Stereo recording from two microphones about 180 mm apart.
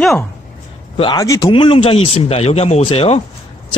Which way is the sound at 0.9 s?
30° left (ahead or behind).